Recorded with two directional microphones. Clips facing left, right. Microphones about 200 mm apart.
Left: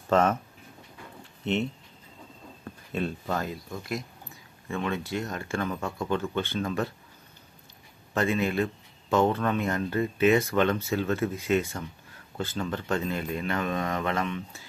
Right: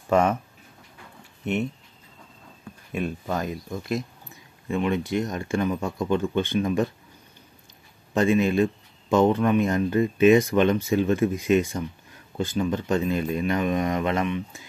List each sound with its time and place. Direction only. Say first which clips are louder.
0.1 s speech: right 2 dB; 15° right (ahead or behind)
1.4 s speech: right 2 dB; 10° right (ahead or behind)
2.9 s speech: right 2 dB; 15° right (ahead or behind)
8.1 s speech: right 6 dB; 15° right (ahead or behind)